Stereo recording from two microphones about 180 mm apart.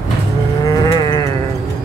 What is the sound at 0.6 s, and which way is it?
Livestock, 25° left (ahead or behind).